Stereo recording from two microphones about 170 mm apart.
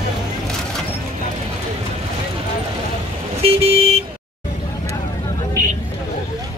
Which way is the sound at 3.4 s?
35° right (ahead or behind).